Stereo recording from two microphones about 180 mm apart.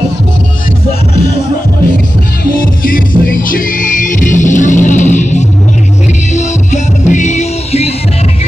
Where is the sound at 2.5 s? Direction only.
50° left (ahead or behind).